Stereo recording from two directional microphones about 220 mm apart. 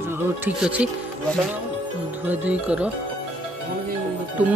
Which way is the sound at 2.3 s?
5° right (ahead or behind).